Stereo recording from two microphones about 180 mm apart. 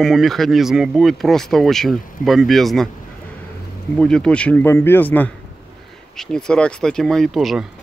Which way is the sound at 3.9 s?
5° left (ahead or behind).